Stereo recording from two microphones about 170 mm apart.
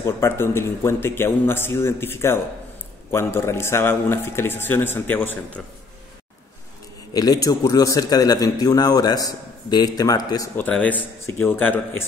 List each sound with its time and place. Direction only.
0.0 s a man's voice: 15° left (ahead or behind)
7.1 s a man's voice: 20° left (ahead or behind)